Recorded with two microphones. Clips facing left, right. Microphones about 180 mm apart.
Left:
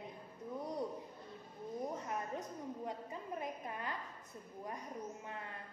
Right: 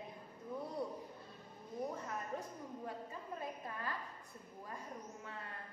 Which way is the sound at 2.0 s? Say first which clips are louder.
Left 2 dB; 20° left (ahead or behind).